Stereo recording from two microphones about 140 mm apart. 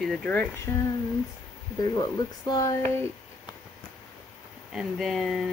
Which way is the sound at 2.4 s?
25° left (ahead or behind).